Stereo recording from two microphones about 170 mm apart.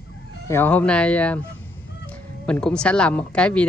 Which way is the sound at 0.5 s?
10° left (ahead or behind).